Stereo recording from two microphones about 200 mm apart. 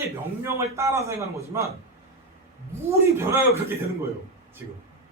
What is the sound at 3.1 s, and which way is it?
Speech, 15° right (ahead or behind).